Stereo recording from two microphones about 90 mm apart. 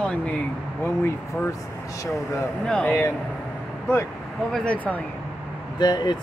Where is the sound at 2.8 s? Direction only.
20° left (ahead or behind).